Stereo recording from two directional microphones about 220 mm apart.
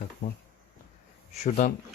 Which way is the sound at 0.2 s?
40° left (ahead or behind).